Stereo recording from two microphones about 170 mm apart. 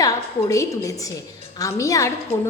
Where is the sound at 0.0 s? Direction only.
20° left (ahead or behind).